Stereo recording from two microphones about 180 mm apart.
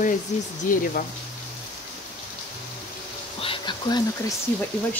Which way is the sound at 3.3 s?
30° left (ahead or behind).